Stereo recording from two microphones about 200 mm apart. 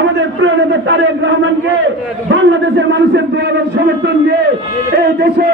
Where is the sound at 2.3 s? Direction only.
65° right (ahead or behind).